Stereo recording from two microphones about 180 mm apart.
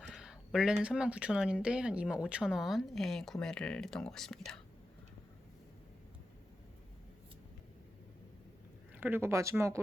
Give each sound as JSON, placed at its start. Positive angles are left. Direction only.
{"t": 0.1, "sound": "a sound", "side_deg": -5}
{"t": 0.8, "sound": "speech", "side_deg": -5}
{"t": 9.0, "sound": "speech", "side_deg": -10}